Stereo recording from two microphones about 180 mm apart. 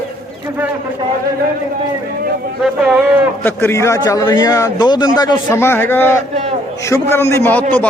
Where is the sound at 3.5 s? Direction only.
10° left (ahead or behind).